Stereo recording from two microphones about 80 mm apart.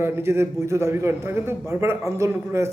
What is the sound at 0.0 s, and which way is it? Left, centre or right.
A man's voice, right.